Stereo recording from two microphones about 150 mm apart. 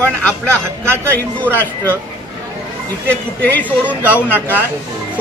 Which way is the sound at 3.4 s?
10° left (ahead or behind).